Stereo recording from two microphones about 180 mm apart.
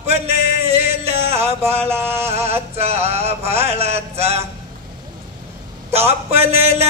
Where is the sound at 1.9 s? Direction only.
15° right (ahead or behind).